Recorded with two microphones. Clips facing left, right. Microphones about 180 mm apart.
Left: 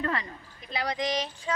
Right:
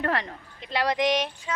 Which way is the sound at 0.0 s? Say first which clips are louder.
Right 3 dB; 70° right (ahead or behind).